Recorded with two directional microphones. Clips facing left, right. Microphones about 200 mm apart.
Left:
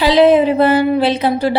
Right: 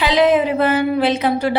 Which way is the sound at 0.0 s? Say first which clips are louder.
Left 5 dB; 30° left (ahead or behind).